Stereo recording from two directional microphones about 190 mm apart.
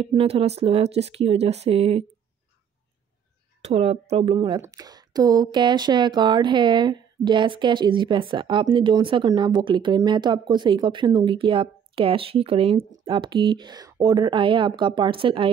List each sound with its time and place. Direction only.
0.0 s speech: 30° right (ahead or behind)
3.6 s speech: 30° right (ahead or behind)